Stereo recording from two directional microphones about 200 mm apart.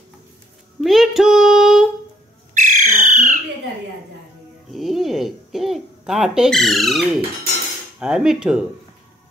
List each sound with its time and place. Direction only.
0.7 s child singing: centre (ahead or behind)
2.5 s bird: 40° right (ahead or behind)
4.6 s a sound: centre (ahead or behind)
8.0 s speech: 5° right (ahead or behind)